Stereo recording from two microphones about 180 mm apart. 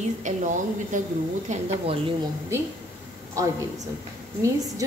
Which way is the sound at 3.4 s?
20° right (ahead or behind).